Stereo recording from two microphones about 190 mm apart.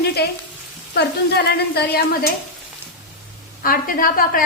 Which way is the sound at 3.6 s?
50° left (ahead or behind).